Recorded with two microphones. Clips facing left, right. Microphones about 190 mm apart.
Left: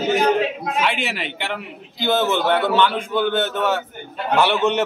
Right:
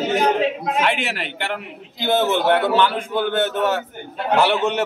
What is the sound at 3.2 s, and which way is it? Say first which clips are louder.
A man's voice: right 1 dB; 45° right (ahead or behind).